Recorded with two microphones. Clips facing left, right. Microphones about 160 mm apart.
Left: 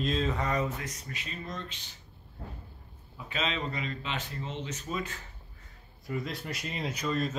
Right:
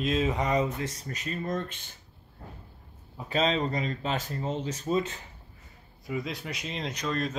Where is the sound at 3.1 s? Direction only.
35° right (ahead or behind).